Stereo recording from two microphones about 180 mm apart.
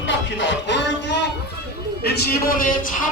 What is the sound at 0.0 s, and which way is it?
Music, 90° left.